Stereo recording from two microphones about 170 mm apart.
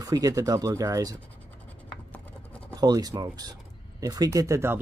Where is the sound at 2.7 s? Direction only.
25° right (ahead or behind).